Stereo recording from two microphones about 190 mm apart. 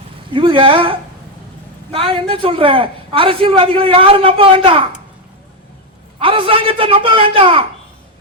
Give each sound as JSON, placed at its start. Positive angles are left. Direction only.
{"t": 0.3, "sound": "a man's voice", "side_deg": -25}
{"t": 6.1, "sound": "a man's voice", "side_deg": -30}